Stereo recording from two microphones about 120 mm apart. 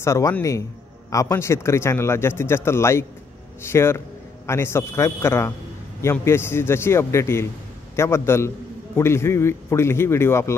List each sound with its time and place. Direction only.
0.0 s speech: 25° left (ahead or behind)